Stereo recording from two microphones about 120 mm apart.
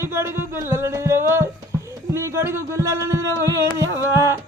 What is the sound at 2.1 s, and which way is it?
Speech, 20° right (ahead or behind).